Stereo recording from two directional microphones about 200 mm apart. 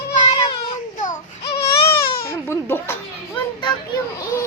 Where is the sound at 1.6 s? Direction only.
15° left (ahead or behind).